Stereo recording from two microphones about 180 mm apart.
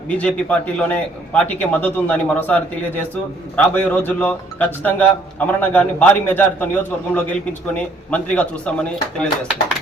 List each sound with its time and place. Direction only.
0.1 s a man's voice: 5° left (ahead or behind)